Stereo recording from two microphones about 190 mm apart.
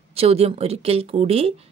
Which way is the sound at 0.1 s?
30° right (ahead or behind).